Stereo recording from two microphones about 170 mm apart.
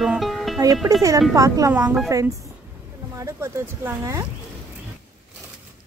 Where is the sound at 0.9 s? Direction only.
20° right (ahead or behind).